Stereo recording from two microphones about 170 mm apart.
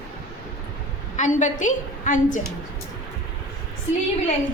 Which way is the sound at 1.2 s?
45° left (ahead or behind).